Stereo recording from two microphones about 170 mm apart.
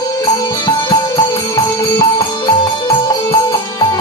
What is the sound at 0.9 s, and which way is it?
Music, 20° left (ahead or behind).